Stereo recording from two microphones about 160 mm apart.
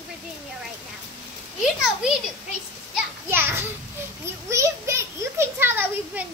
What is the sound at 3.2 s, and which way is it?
Speech, 15° right (ahead or behind).